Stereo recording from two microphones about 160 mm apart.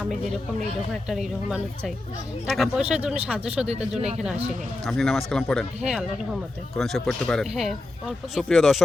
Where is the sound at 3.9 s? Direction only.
45° right (ahead or behind).